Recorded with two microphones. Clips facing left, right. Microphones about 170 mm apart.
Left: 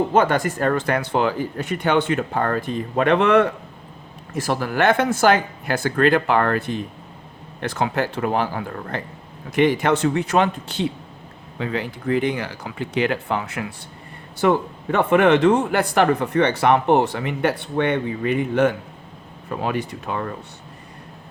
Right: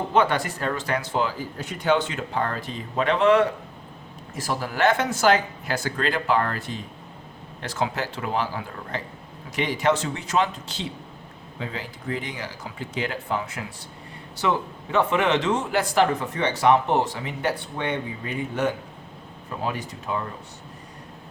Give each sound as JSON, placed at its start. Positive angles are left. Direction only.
{"t": 0.1, "sound": "speech", "side_deg": 45}
{"t": 14.3, "sound": "speech", "side_deg": 55}